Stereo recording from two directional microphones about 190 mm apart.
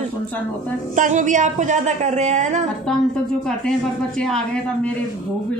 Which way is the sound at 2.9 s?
5° left (ahead or behind).